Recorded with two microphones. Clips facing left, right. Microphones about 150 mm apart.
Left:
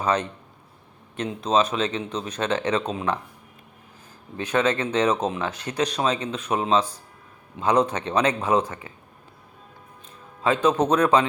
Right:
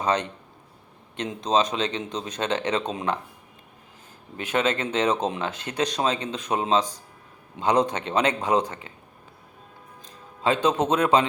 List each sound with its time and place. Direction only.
1.1 s speech: 30° right (ahead or behind)
4.4 s a man's voice: 25° right (ahead or behind)
10.4 s speech: 30° right (ahead or behind)